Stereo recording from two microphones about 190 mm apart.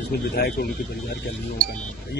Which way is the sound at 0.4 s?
55° left (ahead or behind).